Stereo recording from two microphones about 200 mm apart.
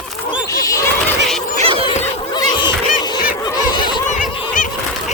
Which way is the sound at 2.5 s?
20° left (ahead or behind).